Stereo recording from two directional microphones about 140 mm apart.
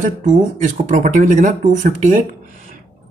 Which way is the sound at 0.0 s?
70° right (ahead or behind).